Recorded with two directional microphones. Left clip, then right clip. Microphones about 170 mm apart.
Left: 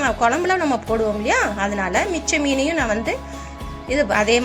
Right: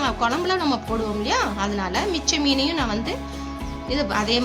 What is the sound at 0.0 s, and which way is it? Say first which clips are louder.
A woman's voice: left 4 dB; 5° left (ahead or behind).